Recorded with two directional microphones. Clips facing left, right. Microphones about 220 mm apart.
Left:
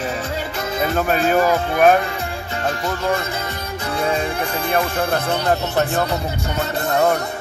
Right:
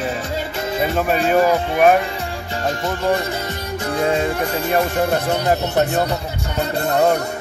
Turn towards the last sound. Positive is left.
turn(degrees=-20)  # may be behind; listen again after turning